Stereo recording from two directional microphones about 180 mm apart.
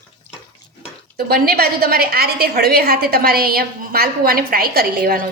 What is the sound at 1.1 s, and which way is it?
A woman's voice, 60° right (ahead or behind).